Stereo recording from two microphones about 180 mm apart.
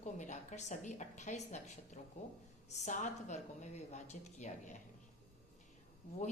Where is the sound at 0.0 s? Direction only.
40° left (ahead or behind).